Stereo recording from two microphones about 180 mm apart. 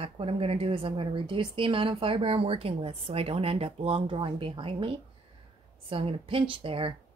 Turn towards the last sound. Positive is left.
turn(degrees=-30)  # may be behind; listen again after turning